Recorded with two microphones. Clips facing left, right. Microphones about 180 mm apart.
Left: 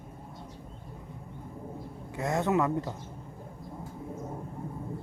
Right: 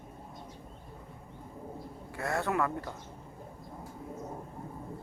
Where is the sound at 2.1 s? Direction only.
20° left (ahead or behind).